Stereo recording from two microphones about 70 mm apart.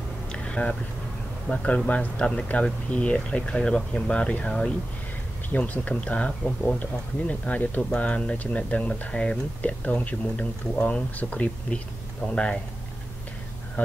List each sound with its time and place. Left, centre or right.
0.3 s a sound: centre
1.5 s speech: centre
6.4 s speech: centre
6.8 s speech: left